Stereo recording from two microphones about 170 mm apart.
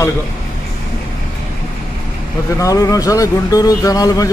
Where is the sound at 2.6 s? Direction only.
20° left (ahead or behind).